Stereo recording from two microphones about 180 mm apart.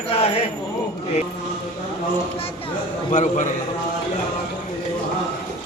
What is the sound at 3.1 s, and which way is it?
Speech, 45° left (ahead or behind).